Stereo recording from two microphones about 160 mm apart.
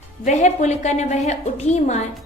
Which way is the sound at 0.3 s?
45° left (ahead or behind).